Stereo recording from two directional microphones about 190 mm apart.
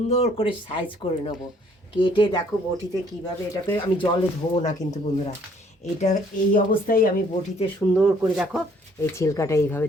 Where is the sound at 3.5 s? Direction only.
20° left (ahead or behind).